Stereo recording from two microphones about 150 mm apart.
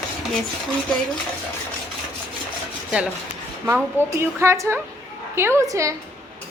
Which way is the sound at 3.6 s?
15° right (ahead or behind).